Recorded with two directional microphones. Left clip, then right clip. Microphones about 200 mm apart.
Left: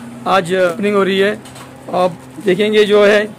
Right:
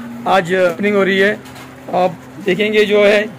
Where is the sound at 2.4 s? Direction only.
35° left (ahead or behind).